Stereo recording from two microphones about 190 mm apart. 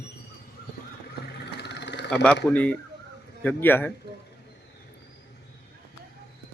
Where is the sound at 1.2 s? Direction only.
60° left (ahead or behind).